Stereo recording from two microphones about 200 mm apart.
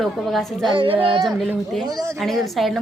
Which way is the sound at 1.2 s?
Centre (ahead or behind).